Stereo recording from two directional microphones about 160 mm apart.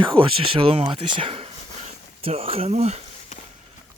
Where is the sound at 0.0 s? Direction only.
35° right (ahead or behind).